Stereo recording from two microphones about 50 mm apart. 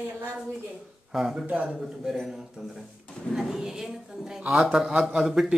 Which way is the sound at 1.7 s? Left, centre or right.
Centre.